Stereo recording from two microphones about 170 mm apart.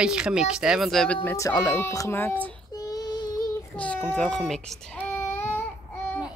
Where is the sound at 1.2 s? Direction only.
20° left (ahead or behind).